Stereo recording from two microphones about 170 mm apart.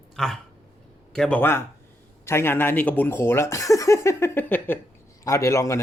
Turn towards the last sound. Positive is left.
turn(degrees=15)  # may be behind; listen again after turning